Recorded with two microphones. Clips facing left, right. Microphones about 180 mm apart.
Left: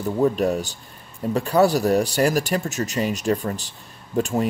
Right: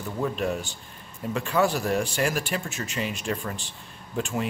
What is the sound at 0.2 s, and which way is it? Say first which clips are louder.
Speech: left 7 dB; 40° left (ahead or behind).